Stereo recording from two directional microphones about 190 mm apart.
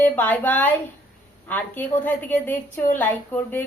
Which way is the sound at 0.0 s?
10° left (ahead or behind).